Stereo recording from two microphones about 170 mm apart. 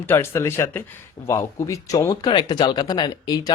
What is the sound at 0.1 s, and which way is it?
Speech, 15° left (ahead or behind).